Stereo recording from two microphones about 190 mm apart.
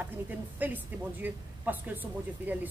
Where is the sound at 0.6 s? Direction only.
10° right (ahead or behind).